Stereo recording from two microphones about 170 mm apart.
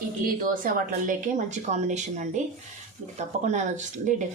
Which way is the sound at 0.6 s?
50° right (ahead or behind).